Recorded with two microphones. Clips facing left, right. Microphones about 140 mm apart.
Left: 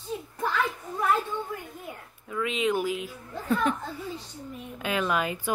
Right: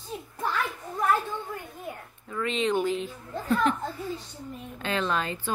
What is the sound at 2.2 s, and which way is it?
Speech, 5° left (ahead or behind).